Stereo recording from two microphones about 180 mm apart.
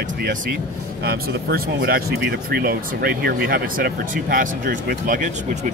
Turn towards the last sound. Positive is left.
turn(degrees=-45)  # may be behind; listen again after turning